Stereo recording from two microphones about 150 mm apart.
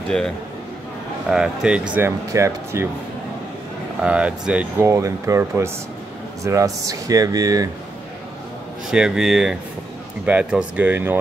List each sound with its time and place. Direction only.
1.3 s speech: 5° right (ahead or behind)
4.0 s speech: 5° right (ahead or behind)
4.8 s speech: 20° right (ahead or behind)
8.9 s speech: 5° right (ahead or behind)